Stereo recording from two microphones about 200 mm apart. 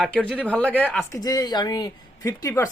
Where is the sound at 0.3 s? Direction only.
5° left (ahead or behind).